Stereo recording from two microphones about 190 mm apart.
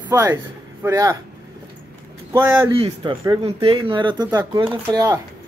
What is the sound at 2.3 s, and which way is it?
Speech, 10° right (ahead or behind).